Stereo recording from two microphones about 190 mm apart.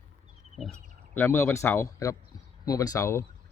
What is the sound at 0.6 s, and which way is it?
Speech, 5° left (ahead or behind).